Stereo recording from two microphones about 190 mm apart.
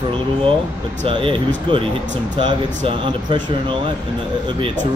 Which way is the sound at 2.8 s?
25° right (ahead or behind).